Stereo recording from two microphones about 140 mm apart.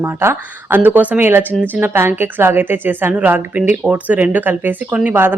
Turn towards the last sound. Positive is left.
turn(degrees=-15)  # may be behind; listen again after turning